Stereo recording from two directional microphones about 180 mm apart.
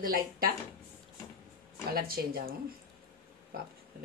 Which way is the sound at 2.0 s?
55° right (ahead or behind).